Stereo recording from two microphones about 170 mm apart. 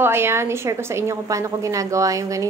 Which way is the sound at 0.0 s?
15° right (ahead or behind).